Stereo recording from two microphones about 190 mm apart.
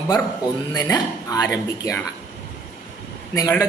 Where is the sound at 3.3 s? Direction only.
20° left (ahead or behind).